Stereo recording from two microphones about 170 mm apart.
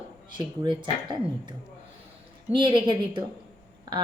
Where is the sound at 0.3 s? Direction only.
25° right (ahead or behind).